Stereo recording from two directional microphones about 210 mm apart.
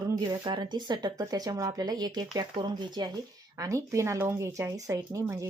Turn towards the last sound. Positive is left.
turn(degrees=-15)  # may be behind; listen again after turning